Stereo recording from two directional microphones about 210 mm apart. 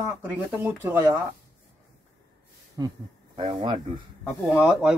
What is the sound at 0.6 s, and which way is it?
Speech, 10° right (ahead or behind).